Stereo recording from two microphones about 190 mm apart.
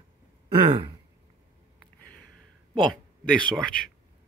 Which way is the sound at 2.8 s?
5° left (ahead or behind).